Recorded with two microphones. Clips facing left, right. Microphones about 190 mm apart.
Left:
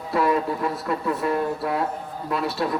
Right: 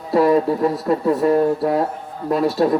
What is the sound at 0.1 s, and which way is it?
A man's voice, 35° right (ahead or behind).